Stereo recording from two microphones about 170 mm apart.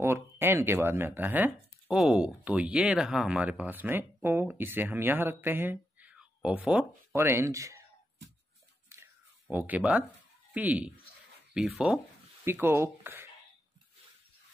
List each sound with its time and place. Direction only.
0.0 s speech: 15° right (ahead or behind)
8.8 s a sound: 15° right (ahead or behind)
10.5 s speech: 10° right (ahead or behind)
12.4 s speech: 15° right (ahead or behind)